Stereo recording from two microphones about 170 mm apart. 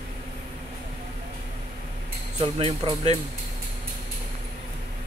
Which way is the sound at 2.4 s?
30° right (ahead or behind).